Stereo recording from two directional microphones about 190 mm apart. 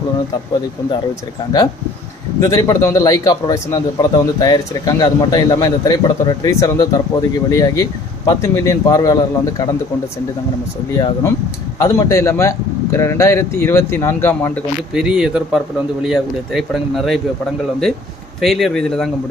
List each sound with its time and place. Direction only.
2.4 s a man's voice: 20° left (ahead or behind)
10.9 s a man's voice: 20° left (ahead or behind)
14.9 s speech: 5° right (ahead or behind)
18.3 s speech: centre (ahead or behind)